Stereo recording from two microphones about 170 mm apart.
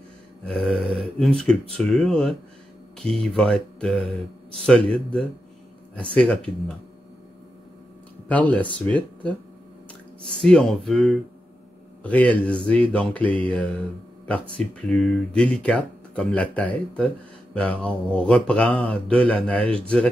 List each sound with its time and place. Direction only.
0.5 s speech: 5° left (ahead or behind)
8.3 s speech: 10° left (ahead or behind)
10.4 s speech: 5° left (ahead or behind)